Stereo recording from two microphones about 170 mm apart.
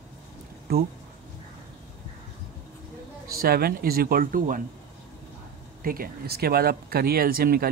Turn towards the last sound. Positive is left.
turn(degrees=-60)  # may be behind; listen again after turning